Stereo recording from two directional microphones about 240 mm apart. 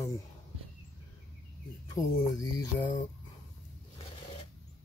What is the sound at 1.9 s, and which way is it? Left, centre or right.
Speech, centre.